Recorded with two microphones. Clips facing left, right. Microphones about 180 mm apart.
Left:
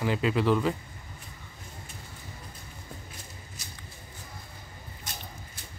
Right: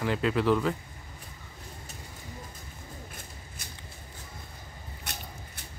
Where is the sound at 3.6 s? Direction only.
55° right (ahead or behind).